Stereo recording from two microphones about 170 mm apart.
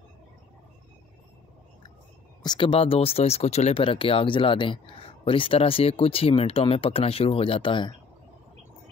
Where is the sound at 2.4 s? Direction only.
30° left (ahead or behind).